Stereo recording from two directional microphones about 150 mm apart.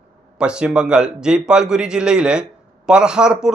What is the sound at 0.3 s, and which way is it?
A man's voice, 5° right (ahead or behind).